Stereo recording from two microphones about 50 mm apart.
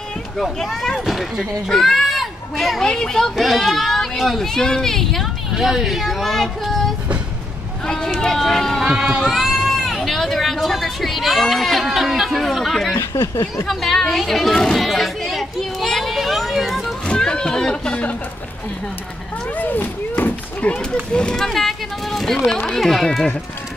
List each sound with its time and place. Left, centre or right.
0.4 s a child's voice: centre
5.5 s speech: centre
7.8 s speech: centre
8.8 s speech: centre
9.4 s speech: centre
12.9 s speech: left
13.7 s speech: centre
14.9 s children playing: centre
17.0 s a sound: centre
19.5 s speech: left
20.6 s speech: left
21.1 s speech: centre
21.5 s speech: centre